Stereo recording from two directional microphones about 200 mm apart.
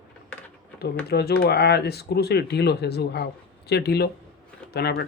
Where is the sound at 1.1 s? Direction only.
55° left (ahead or behind).